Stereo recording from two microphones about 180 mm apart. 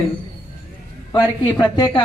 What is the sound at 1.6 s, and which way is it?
Speech, 25° left (ahead or behind).